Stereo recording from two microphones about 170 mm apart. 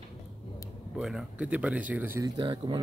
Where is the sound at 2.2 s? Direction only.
25° right (ahead or behind).